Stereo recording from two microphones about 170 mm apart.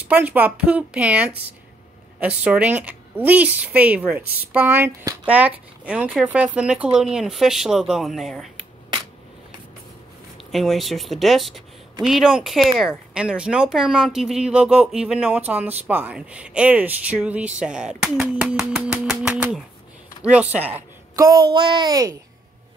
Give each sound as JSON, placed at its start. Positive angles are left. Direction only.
{"t": 0.1, "sound": "speech", "side_deg": -10}
{"t": 10.3, "sound": "speech", "side_deg": 0}
{"t": 21.5, "sound": "a child's voice", "side_deg": -25}